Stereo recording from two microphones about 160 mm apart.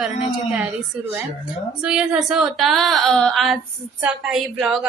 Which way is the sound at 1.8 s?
5° right (ahead or behind).